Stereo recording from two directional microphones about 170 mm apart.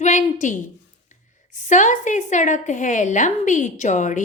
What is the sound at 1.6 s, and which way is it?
A woman's voice, 45° left (ahead or behind).